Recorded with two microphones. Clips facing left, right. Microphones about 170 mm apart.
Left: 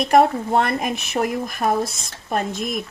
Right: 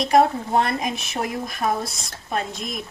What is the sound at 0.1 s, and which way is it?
A woman's voice, 55° left (ahead or behind).